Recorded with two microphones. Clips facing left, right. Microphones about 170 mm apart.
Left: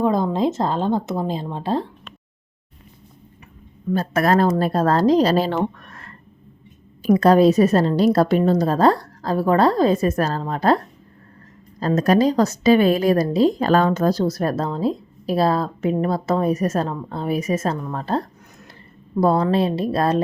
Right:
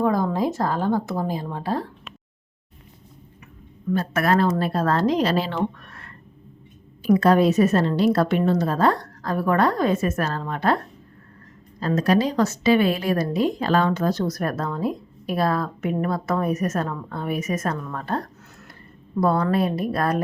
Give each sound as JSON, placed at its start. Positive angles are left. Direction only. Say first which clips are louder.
{"t": 0.0, "sound": "speech", "louder": "left 2 dB", "side_deg": 20}
{"t": 3.9, "sound": "a woman's voice", "louder": "left 3 dB", "side_deg": 40}
{"t": 11.8, "sound": "a woman's voice", "louder": "left 3 dB", "side_deg": 40}